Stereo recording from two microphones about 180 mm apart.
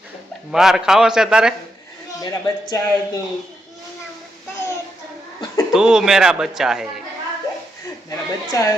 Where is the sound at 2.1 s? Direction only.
20° left (ahead or behind).